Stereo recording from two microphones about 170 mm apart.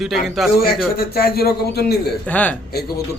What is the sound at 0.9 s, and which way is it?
A man's voice, 65° left (ahead or behind).